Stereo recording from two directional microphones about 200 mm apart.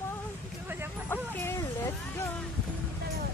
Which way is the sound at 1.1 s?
10° left (ahead or behind).